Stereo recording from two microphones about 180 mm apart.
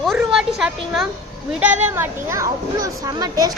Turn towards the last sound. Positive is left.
turn(degrees=-20)  # may be behind; listen again after turning